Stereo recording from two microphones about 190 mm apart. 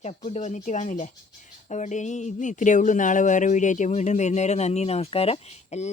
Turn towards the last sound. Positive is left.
turn(degrees=35)  # may be behind; listen again after turning